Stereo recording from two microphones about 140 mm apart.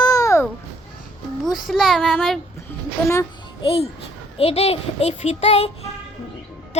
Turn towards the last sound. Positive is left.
turn(degrees=45)  # may be behind; listen again after turning